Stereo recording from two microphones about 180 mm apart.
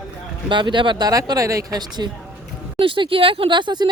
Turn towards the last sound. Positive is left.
turn(degrees=-25)  # may be behind; listen again after turning